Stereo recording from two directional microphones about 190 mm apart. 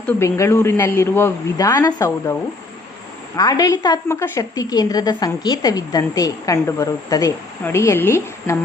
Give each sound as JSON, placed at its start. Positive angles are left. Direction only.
{"t": 0.1, "sound": "a man's voice", "side_deg": 15}
{"t": 3.3, "sound": "a woman's voice", "side_deg": 20}